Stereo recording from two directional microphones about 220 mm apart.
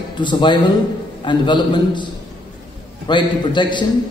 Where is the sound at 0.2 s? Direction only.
20° left (ahead or behind).